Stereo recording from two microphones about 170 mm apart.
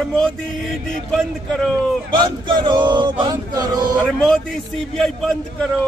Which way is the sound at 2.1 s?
25° right (ahead or behind).